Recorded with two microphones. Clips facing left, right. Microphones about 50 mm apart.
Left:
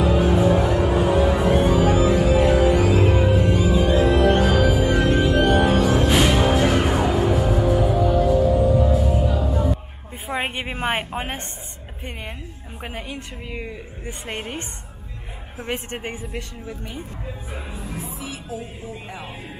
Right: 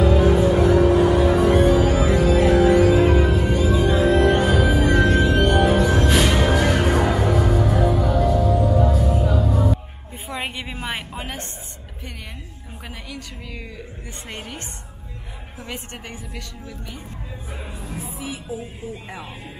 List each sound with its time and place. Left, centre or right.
0.0 s music: centre
10.3 s a sound: left
12.8 s a woman's voice: left
15.6 s speech: left
17.7 s music: centre